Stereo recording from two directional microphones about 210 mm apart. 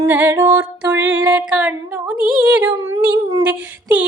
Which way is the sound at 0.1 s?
10° right (ahead or behind).